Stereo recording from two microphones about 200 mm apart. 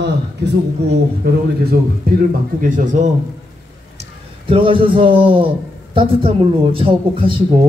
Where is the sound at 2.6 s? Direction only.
40° right (ahead or behind).